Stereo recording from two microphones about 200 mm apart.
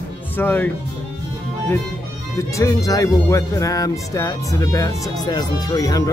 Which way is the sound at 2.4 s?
15° left (ahead or behind).